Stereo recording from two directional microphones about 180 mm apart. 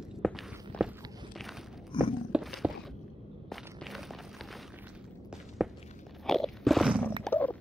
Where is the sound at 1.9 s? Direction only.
25° left (ahead or behind).